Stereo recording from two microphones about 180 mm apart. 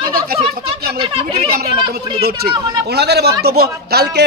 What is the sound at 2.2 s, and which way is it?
Speech, 65° right (ahead or behind).